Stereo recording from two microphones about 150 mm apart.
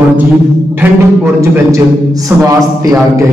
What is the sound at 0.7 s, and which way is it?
A woman's voice, 15° right (ahead or behind).